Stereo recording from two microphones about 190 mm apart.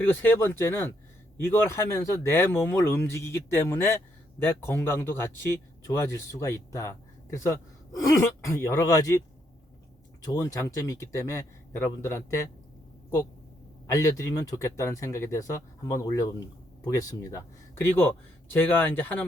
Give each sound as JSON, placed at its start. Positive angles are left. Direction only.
{"t": 0.0, "sound": "speech", "side_deg": 10}
{"t": 10.4, "sound": "speech", "side_deg": 15}
{"t": 13.8, "sound": "speech", "side_deg": 15}